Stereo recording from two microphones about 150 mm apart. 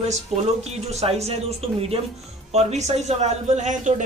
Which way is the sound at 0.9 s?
45° right (ahead or behind).